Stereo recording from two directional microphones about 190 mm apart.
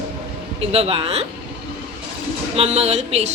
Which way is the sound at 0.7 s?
30° right (ahead or behind).